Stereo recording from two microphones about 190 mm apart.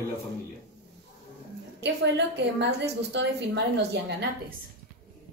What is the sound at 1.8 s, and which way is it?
A woman's voice, 65° right (ahead or behind).